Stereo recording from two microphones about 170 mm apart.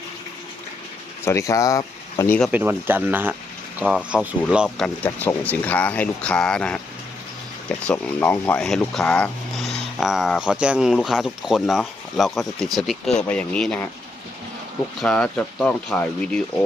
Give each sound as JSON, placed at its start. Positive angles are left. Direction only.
{"t": 1.2, "sound": "speech", "side_deg": 15}
{"t": 2.5, "sound": "speech", "side_deg": -10}
{"t": 5.0, "sound": "speech", "side_deg": 10}
{"t": 15.0, "sound": "speech", "side_deg": 5}